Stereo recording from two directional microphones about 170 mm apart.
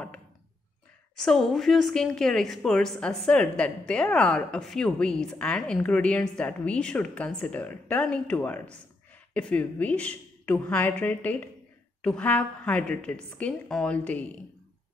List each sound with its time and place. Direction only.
1.1 s a woman's voice: 5° left (ahead or behind)